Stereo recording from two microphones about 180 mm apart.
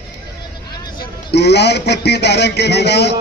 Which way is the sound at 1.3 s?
65° left (ahead or behind).